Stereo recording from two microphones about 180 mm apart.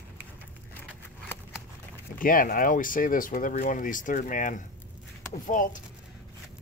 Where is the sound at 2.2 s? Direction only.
50° left (ahead or behind).